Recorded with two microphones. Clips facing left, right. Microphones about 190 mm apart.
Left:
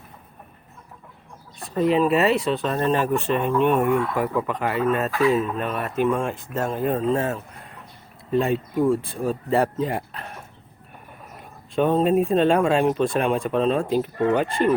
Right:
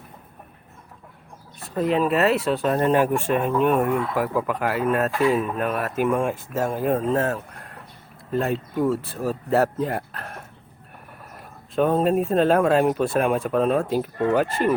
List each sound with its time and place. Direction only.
1.7 s speech: centre (ahead or behind)
11.7 s speech: 5° right (ahead or behind)